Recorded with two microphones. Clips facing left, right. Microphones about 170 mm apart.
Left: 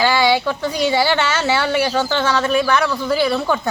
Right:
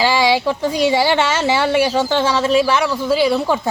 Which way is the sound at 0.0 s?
10° right (ahead or behind).